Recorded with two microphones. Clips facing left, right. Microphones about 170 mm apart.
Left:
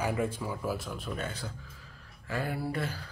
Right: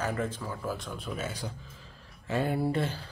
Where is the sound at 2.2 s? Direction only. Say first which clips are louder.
Right 5 dB; 25° right (ahead or behind).